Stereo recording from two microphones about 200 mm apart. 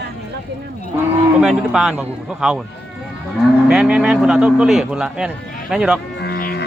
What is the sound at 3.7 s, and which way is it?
A man's voice, 5° right (ahead or behind).